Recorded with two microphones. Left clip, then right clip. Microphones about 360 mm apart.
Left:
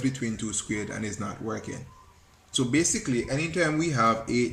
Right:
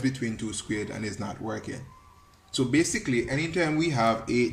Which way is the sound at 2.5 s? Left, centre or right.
Centre.